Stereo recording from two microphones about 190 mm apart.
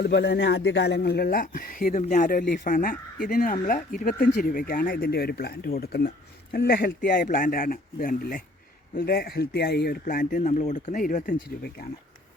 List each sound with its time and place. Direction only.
0.0 s speech: 65° left (ahead or behind)